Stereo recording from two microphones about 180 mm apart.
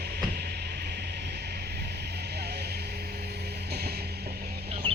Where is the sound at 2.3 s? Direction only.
65° right (ahead or behind).